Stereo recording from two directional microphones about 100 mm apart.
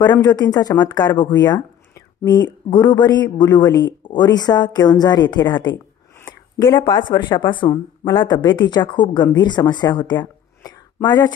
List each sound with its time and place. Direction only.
0.2 s speech: 40° left (ahead or behind)
6.8 s a woman's voice: 50° left (ahead or behind)